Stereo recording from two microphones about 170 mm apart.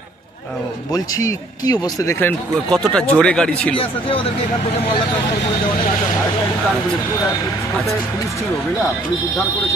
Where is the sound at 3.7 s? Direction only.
30° left (ahead or behind).